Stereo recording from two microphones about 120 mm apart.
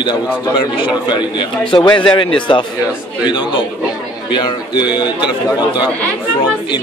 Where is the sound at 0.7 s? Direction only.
45° left (ahead or behind).